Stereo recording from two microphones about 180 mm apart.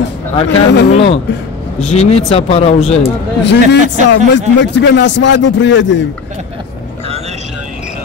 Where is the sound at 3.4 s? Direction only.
70° left (ahead or behind); by 6.0 s 90° left.